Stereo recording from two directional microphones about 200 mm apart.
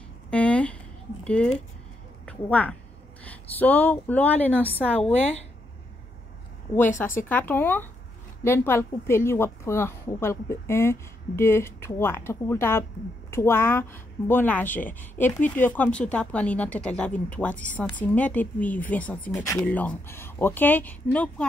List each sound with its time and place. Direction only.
0.3 s a sound: 5° left (ahead or behind)
1.2 s a woman's voice: 5° left (ahead or behind)
7.2 s speech: 10° left (ahead or behind)